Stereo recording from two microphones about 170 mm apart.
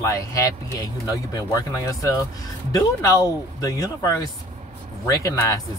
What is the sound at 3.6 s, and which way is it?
Speech, 20° left (ahead or behind).